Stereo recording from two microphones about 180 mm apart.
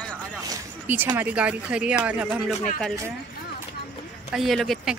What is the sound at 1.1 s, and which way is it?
Speech, 5° right (ahead or behind).